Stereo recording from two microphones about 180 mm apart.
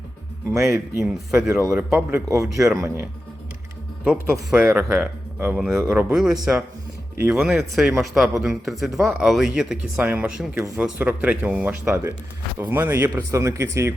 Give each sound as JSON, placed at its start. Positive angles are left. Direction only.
{"t": 0.6, "sound": "speech", "side_deg": 0}
{"t": 2.3, "sound": "speech", "side_deg": -15}
{"t": 4.0, "sound": "speech", "side_deg": -5}